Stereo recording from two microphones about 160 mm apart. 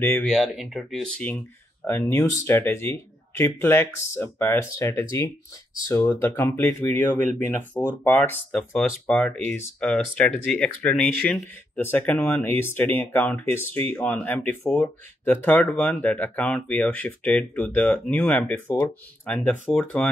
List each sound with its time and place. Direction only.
0.0 s speech: 15° left (ahead or behind)
0.3 s speech: centre (ahead or behind)